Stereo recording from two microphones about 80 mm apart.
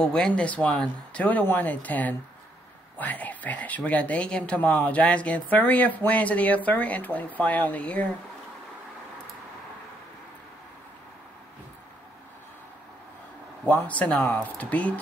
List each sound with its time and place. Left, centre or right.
0.0 s speech: centre
13.8 s speech: centre